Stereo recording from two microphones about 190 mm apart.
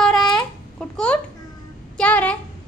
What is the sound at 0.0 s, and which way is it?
Babbling, centre (ahead or behind).